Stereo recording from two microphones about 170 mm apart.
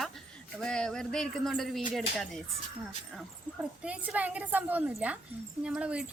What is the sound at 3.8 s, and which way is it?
A woman's voice, 10° right (ahead or behind).